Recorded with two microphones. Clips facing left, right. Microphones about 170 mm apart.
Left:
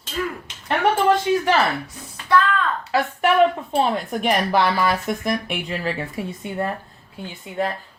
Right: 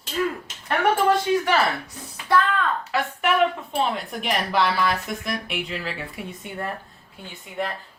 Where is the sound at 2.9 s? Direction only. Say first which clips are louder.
Left 6 dB; 35° left (ahead or behind).